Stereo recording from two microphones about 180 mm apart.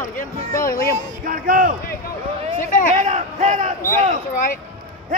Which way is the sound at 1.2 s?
50° right (ahead or behind).